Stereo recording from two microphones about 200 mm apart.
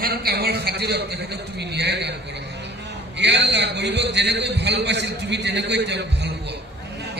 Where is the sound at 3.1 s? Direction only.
60° right (ahead or behind).